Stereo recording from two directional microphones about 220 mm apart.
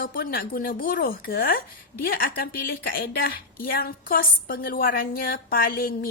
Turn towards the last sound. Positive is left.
turn(degrees=40)  # may be behind; listen again after turning